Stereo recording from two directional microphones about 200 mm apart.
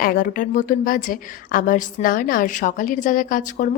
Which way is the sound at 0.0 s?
45° left (ahead or behind).